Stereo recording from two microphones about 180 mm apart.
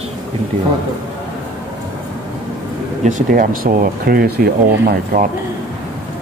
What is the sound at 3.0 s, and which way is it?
Speech, 45° right (ahead or behind).